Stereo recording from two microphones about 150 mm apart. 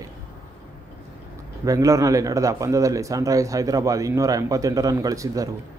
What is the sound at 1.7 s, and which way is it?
Speech, 20° right (ahead or behind).